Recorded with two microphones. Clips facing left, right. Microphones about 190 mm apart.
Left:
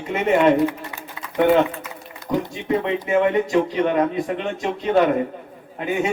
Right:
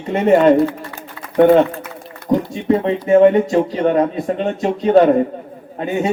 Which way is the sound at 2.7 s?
35° right (ahead or behind).